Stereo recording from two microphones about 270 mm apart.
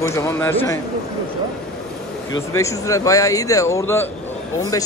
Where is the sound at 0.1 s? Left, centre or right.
Centre.